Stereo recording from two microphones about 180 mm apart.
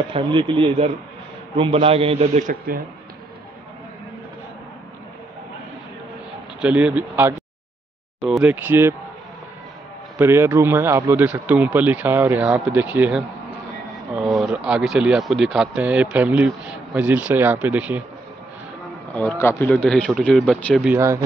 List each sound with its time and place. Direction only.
0.1 s a man's voice: 30° right (ahead or behind); by 2.8 s 50° right (ahead or behind)
6.6 s speech: 5° right (ahead or behind)
10.1 s speech: 15° right (ahead or behind)
19.1 s speech: 10° left (ahead or behind)